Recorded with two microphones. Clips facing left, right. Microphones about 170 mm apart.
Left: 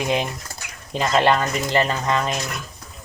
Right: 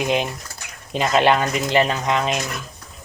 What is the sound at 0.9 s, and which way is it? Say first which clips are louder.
Speech: right 1 dB; 20° right (ahead or behind).